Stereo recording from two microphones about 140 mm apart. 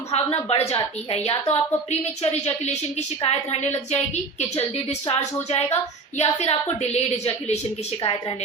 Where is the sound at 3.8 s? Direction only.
55° left (ahead or behind).